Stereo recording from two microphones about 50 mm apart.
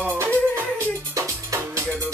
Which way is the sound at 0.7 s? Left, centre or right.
Right.